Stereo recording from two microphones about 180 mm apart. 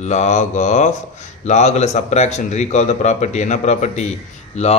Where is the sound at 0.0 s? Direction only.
40° left (ahead or behind).